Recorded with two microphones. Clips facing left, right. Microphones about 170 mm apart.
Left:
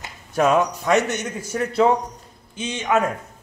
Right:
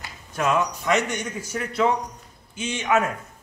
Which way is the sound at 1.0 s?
15° right (ahead or behind).